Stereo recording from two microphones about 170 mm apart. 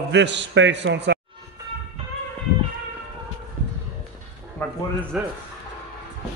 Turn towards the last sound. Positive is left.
turn(degrees=-5)  # may be behind; listen again after turning